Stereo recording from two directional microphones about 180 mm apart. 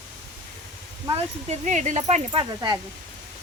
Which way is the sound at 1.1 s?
35° right (ahead or behind).